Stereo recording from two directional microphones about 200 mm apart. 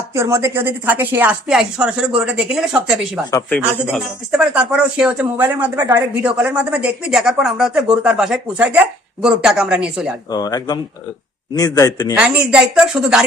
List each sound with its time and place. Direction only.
0.1 s a woman's voice: 15° right (ahead or behind)
10.3 s a man's voice: 20° left (ahead or behind)
12.1 s speech: 5° right (ahead or behind)